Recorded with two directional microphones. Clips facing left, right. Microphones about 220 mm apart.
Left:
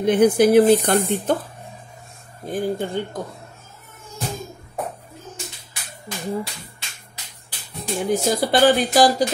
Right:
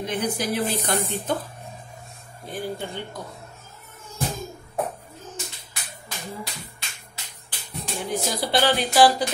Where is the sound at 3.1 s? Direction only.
50° left (ahead or behind).